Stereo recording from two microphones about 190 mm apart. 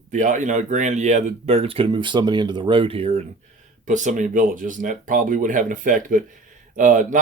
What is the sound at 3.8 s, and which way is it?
Speech, 40° right (ahead or behind).